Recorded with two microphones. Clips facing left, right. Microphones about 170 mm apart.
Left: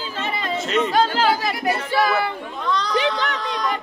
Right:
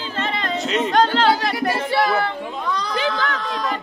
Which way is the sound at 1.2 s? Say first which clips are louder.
Right 2 dB; 10° left (ahead or behind).